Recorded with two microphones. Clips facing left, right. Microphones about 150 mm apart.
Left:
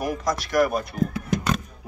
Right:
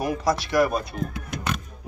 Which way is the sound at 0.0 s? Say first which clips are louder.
Right 2 dB; 25° right (ahead or behind).